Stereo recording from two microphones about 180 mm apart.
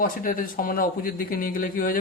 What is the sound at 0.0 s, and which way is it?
A man's voice, 50° left (ahead or behind).